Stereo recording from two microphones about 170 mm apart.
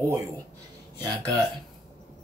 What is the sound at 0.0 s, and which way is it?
Speech, 15° right (ahead or behind).